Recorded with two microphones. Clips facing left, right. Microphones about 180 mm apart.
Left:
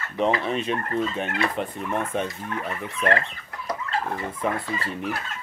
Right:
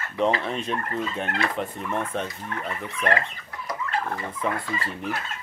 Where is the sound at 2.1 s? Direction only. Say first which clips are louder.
Left 3 dB; 10° left (ahead or behind).